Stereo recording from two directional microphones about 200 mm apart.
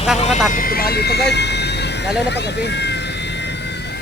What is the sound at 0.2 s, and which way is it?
Speech, 40° left (ahead or behind).